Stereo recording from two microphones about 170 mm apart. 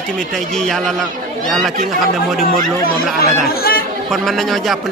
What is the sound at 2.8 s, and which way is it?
Speech, 60° left (ahead or behind).